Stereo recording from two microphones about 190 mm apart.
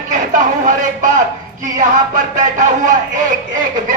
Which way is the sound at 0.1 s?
45° right (ahead or behind).